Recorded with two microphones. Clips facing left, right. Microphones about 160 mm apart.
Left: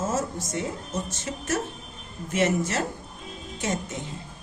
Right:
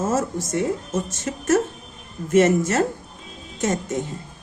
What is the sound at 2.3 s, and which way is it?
Speech, 50° right (ahead or behind).